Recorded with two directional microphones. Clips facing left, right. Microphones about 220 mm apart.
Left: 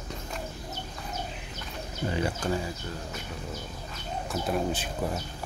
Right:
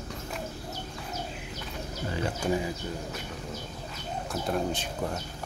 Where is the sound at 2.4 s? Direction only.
10° right (ahead or behind).